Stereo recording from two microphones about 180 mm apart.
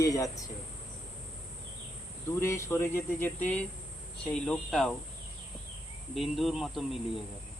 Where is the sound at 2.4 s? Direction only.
15° left (ahead or behind).